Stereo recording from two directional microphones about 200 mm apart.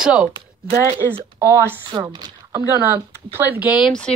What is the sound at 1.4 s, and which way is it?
Speech, 15° right (ahead or behind).